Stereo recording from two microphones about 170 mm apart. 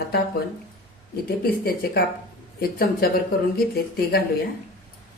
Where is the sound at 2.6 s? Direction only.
60° left (ahead or behind).